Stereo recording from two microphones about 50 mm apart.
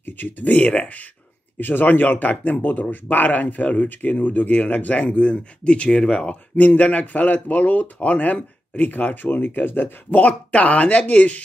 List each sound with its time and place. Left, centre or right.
0.0 s speech: left
1.6 s speech: left